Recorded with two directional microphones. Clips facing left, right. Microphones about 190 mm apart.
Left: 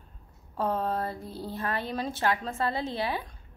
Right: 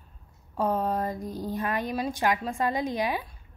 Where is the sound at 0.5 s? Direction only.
15° right (ahead or behind).